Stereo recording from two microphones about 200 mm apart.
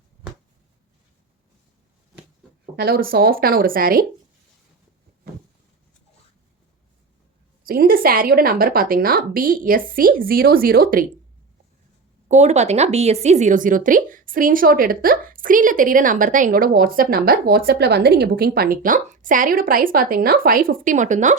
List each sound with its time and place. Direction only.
2.7 s a woman's voice: 50° right (ahead or behind)
5.2 s a sound: 50° right (ahead or behind)
7.6 s a woman's voice: 45° right (ahead or behind)
12.3 s a woman's voice: 35° right (ahead or behind)